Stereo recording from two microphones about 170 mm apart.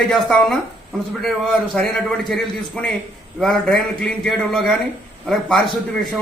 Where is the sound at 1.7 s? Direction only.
5° left (ahead or behind).